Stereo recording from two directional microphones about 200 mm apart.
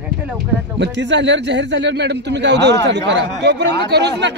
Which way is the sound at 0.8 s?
60° right (ahead or behind).